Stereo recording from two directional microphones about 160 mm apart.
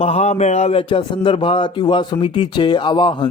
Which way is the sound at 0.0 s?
40° left (ahead or behind).